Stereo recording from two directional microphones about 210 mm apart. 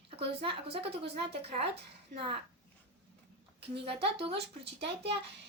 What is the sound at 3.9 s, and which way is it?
Speech, 25° right (ahead or behind).